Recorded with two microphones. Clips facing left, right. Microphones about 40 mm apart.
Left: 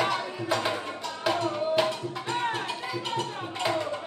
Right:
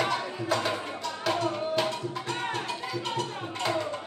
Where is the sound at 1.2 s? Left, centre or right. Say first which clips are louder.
Left 2 dB; centre.